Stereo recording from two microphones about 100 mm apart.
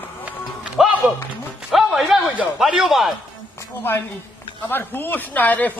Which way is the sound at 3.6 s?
25° left (ahead or behind).